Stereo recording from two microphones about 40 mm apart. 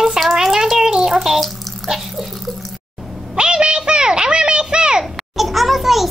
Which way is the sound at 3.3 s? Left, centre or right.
Right.